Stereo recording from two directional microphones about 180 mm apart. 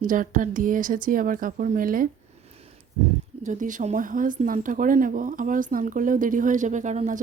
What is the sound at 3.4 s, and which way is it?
A woman's voice, 45° right (ahead or behind).